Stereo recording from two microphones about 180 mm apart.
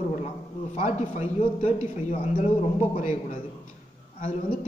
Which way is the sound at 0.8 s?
40° left (ahead or behind).